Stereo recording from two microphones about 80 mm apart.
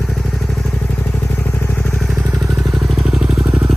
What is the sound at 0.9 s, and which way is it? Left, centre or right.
Motorcycle, centre.